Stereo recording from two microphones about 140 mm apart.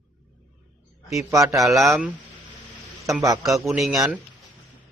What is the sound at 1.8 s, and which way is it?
Speech, centre (ahead or behind).